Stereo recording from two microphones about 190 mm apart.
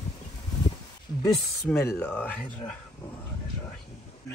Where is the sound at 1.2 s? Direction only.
15° left (ahead or behind).